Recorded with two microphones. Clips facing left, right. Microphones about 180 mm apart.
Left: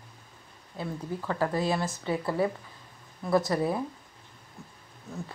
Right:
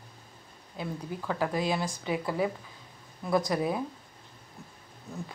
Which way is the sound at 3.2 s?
5° left (ahead or behind).